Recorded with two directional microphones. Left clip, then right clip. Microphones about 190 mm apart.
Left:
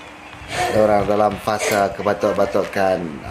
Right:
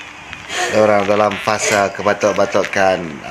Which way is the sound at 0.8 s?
25° right (ahead or behind).